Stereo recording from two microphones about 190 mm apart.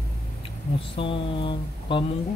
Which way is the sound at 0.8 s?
30° left (ahead or behind).